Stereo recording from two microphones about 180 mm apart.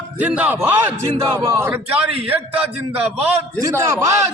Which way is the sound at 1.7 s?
10° right (ahead or behind).